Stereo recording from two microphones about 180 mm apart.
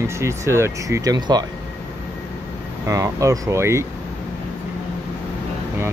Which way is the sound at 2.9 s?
20° right (ahead or behind).